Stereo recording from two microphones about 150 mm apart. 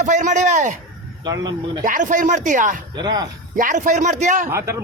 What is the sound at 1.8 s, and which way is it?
Speech, 60° right (ahead or behind).